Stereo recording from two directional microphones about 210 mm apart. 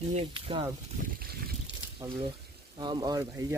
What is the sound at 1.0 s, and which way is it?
Boat, 45° right (ahead or behind).